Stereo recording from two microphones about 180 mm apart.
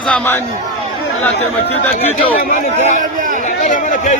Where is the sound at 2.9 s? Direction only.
45° right (ahead or behind).